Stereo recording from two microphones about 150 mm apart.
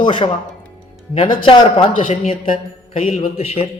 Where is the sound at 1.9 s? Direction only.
55° left (ahead or behind).